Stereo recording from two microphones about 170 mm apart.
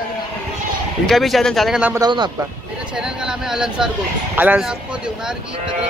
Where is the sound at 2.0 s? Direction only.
25° right (ahead or behind).